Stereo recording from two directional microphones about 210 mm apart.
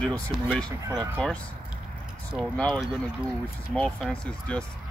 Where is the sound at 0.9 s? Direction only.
Centre (ahead or behind).